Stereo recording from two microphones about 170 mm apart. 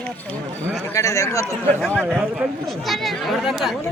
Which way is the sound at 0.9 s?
20° left (ahead or behind).